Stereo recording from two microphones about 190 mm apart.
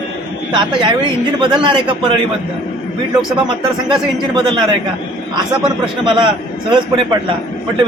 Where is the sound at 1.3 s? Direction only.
25° right (ahead or behind).